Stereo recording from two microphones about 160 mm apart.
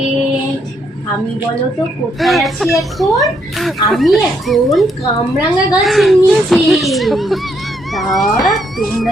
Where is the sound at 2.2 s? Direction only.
Centre (ahead or behind).